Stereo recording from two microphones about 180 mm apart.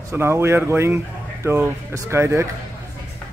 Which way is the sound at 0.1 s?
15° right (ahead or behind).